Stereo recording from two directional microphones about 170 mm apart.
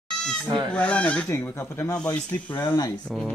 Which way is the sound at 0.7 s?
5° left (ahead or behind).